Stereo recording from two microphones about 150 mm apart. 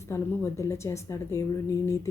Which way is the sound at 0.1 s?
20° left (ahead or behind).